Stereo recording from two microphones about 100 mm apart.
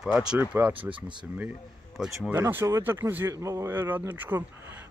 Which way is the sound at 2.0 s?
Centre (ahead or behind).